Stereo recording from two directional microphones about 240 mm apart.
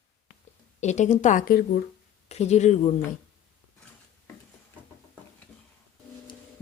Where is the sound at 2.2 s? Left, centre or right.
Left.